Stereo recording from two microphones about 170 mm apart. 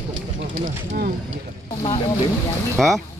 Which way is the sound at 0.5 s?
50° right (ahead or behind).